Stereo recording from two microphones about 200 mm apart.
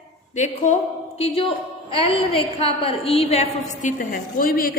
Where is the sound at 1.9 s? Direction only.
25° left (ahead or behind); by 4.8 s 45° left (ahead or behind).